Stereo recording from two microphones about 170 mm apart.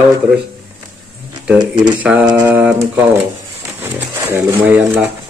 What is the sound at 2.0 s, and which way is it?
Speech, 10° right (ahead or behind).